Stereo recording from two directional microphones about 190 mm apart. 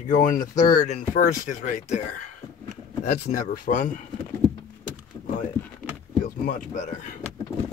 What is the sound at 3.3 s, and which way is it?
Speech, 45° left (ahead or behind).